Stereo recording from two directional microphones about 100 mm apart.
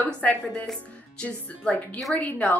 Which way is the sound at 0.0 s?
15° left (ahead or behind).